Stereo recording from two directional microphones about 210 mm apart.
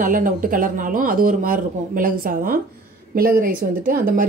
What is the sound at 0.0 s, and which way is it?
Speech, 40° right (ahead or behind).